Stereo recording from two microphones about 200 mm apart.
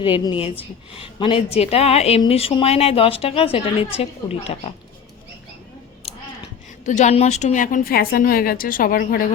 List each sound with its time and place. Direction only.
0.0 s a woman's voice: 25° left (ahead or behind)
6.0 s a sound: 30° left (ahead or behind)
6.8 s a woman's voice: 35° left (ahead or behind)